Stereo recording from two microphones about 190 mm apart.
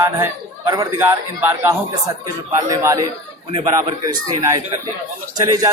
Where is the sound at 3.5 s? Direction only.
30° right (ahead or behind).